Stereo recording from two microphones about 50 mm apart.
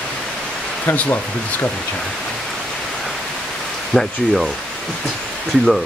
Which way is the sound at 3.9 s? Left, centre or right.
Centre.